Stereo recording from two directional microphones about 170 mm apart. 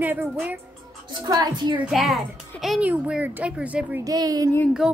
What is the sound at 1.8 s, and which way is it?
A child's voice, centre (ahead or behind).